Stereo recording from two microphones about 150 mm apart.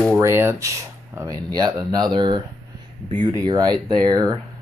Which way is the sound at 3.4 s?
30° right (ahead or behind).